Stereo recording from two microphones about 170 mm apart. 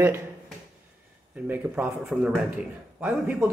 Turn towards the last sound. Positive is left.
turn(degrees=-10)  # may be behind; listen again after turning